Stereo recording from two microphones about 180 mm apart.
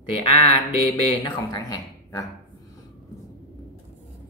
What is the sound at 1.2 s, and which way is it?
Speech, 20° left (ahead or behind).